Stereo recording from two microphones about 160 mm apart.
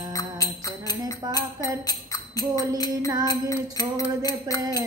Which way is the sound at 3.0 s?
25° right (ahead or behind).